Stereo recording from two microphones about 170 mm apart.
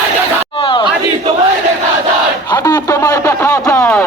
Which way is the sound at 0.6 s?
30° left (ahead or behind).